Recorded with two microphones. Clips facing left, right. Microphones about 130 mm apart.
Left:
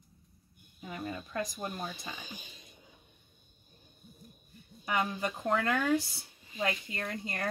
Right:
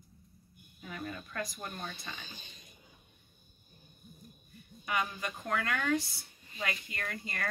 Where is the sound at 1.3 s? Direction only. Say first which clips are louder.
Left 6 dB; 30° left (ahead or behind).